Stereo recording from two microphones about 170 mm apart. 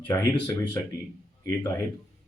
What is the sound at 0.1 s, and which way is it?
Speech, 15° left (ahead or behind).